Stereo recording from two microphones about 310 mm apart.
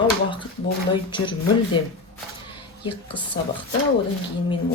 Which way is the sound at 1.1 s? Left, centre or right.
Centre.